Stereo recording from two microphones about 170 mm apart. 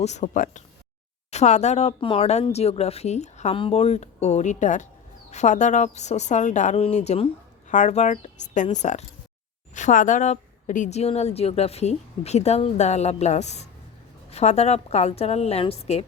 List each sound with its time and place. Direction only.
0.0 s a woman's voice: 45° left (ahead or behind)